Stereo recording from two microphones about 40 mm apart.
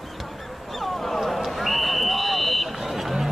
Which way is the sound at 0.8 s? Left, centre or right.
Centre.